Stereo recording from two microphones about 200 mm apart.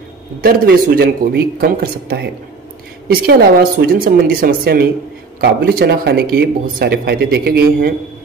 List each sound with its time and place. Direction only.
0.4 s speech: 45° right (ahead or behind)